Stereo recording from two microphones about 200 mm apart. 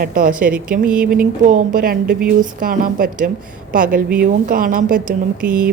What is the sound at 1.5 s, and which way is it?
A woman's voice, 45° right (ahead or behind).